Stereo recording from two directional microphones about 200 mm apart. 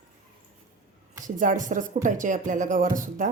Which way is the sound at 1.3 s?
40° right (ahead or behind).